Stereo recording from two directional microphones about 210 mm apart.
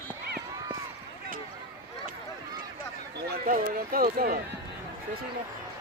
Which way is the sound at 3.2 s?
40° right (ahead or behind).